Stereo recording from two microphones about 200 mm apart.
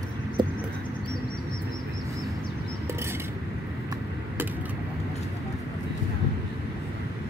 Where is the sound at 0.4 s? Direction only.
20° right (ahead or behind).